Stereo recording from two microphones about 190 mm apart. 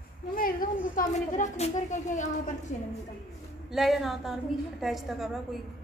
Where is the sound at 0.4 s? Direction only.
45° left (ahead or behind).